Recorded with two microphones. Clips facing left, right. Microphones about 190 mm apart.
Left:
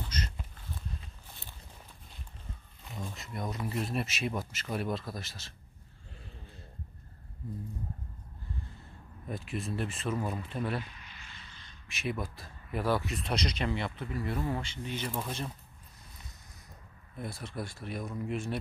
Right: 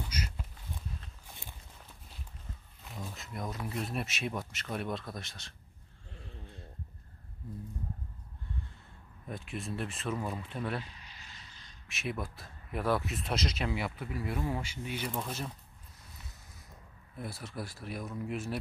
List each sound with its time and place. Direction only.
0.0 s a sound: 10° right (ahead or behind)
2.8 s speech: centre (ahead or behind)
9.3 s speech: centre (ahead or behind)
10.8 s a sound: 35° right (ahead or behind)
11.9 s speech: centre (ahead or behind)
17.2 s speech: 5° right (ahead or behind)